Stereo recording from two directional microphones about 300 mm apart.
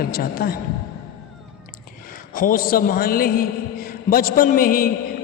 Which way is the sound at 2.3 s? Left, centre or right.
Left.